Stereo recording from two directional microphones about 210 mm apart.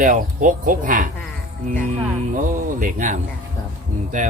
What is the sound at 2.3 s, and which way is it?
Speech, 40° right (ahead or behind).